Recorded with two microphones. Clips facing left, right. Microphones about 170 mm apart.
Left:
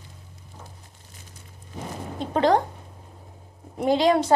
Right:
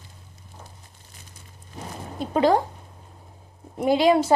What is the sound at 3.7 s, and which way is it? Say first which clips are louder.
Speech: right 1 dB; 10° right (ahead or behind).